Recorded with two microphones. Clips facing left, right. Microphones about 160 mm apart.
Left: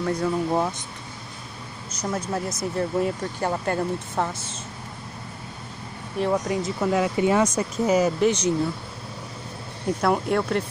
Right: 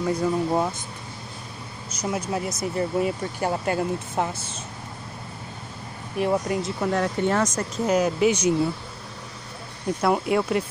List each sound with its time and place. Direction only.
0.0 s speech: 5° right (ahead or behind)
2.0 s speech: 5° right (ahead or behind)
6.1 s speech: 5° right (ahead or behind)
10.0 s speech: 5° right (ahead or behind)